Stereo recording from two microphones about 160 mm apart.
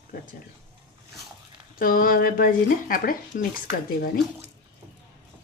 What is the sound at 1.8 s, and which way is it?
Speech, 60° left (ahead or behind).